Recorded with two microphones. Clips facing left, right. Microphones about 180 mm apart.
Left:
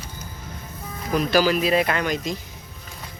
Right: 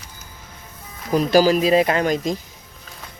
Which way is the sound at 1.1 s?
40° right (ahead or behind).